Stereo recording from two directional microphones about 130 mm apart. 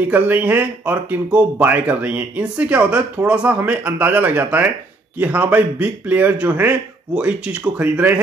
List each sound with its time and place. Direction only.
0.0 s speech: 15° right (ahead or behind)